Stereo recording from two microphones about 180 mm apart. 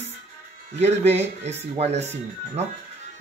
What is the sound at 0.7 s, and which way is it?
Speech, 35° right (ahead or behind).